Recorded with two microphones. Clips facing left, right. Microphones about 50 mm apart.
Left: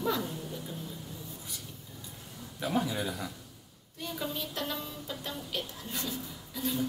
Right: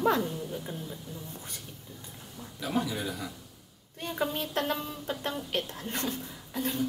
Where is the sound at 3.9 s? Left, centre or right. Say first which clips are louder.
Right 5 dB; right.